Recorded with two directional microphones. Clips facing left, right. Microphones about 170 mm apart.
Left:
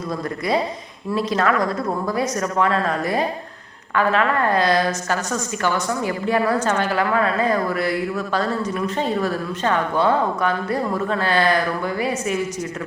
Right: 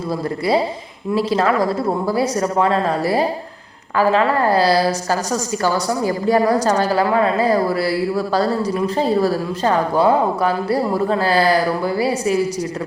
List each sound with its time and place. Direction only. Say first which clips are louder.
1.1 s a woman's voice: right 3 dB; 30° right (ahead or behind)
10.1 s speech: right 3 dB; 15° right (ahead or behind)
10.4 s a woman's voice: right 4 dB; 35° right (ahead or behind)